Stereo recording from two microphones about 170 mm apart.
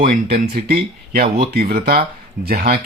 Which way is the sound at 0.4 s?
65° right (ahead or behind).